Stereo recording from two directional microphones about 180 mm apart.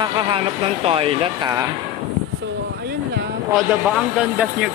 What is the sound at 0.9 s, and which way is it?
Speech, 30° right (ahead or behind).